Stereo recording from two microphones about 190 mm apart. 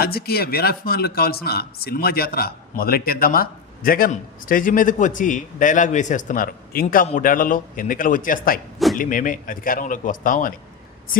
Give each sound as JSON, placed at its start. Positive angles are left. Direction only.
{"t": 0.0, "sound": "speech", "side_deg": 55}